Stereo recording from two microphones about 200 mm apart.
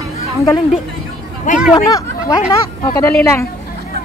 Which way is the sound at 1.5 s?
35° left (ahead or behind).